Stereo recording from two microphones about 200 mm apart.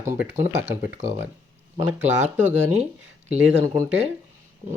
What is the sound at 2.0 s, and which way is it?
Speech, 35° right (ahead or behind).